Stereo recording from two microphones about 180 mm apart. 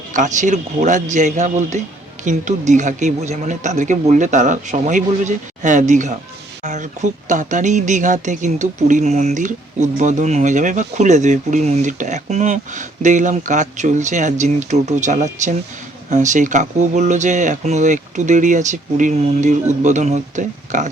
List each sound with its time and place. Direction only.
0.1 s speech: 45° right (ahead or behind)